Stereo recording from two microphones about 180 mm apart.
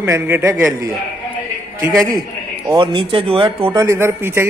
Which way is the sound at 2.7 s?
25° right (ahead or behind).